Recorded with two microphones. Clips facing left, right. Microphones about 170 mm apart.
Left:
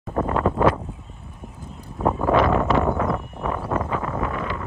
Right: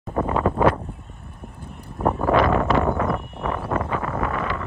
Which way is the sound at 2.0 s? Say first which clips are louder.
Even; 5° right (ahead or behind).